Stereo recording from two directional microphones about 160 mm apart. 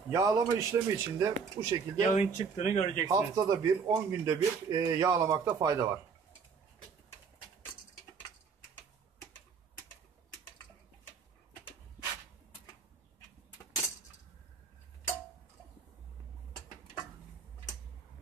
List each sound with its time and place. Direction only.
0.1 s speech: 20° right (ahead or behind)
2.1 s speech: 45° left (ahead or behind)
3.1 s speech: 20° right (ahead or behind)